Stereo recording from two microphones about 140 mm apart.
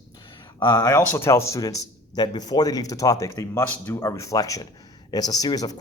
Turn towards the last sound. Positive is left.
turn(degrees=25)  # may be behind; listen again after turning